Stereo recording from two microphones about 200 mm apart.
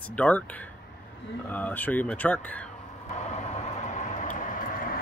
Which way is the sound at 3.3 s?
35° left (ahead or behind).